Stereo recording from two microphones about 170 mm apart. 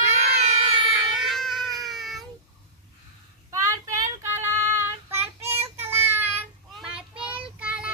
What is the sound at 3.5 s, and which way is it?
Child singing, 20° right (ahead or behind).